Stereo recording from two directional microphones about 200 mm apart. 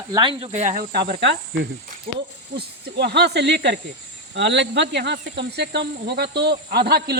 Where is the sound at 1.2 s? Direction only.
60° right (ahead or behind).